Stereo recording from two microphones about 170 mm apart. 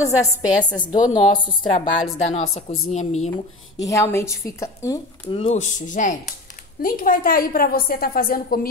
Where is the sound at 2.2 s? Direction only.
40° left (ahead or behind).